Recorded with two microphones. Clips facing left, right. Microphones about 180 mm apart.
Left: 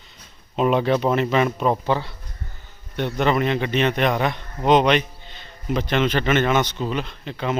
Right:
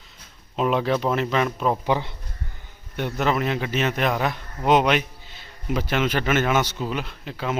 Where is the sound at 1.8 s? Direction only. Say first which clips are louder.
Left 1 dB; 15° right (ahead or behind).